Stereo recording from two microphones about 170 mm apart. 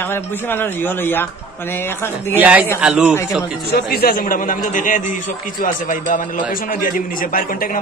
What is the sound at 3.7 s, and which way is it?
A man's voice, 65° left (ahead or behind).